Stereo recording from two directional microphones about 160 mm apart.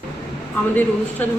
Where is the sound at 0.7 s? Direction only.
10° left (ahead or behind).